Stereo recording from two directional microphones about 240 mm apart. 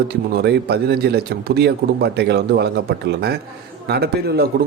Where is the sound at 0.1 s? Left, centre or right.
Right.